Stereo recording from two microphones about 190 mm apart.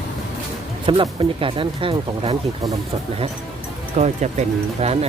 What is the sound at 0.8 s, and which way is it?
Speech, 25° right (ahead or behind).